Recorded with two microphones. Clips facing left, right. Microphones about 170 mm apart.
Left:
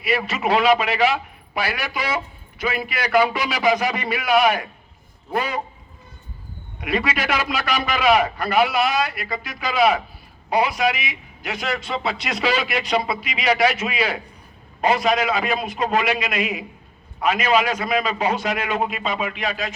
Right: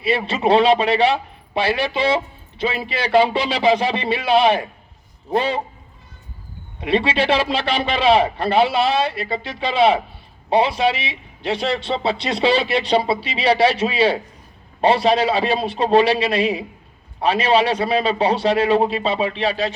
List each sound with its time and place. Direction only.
0.0 s a man's voice: 30° right (ahead or behind)
6.7 s a man's voice: 30° right (ahead or behind)